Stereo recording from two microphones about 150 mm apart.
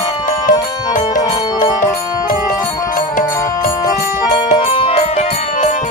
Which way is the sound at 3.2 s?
20° left (ahead or behind).